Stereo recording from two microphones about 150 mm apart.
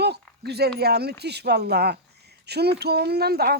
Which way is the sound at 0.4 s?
90° right.